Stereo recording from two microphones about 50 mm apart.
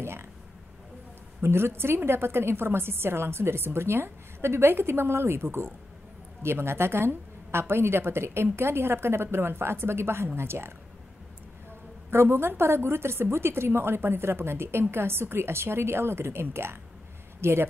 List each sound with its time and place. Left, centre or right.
0.0 s a sound: right
1.4 s a woman's voice: right
12.1 s a woman's voice: right